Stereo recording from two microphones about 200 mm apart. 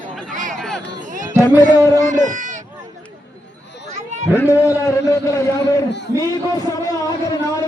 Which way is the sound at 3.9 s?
35° right (ahead or behind).